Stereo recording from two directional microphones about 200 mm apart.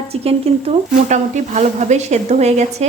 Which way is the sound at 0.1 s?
30° right (ahead or behind).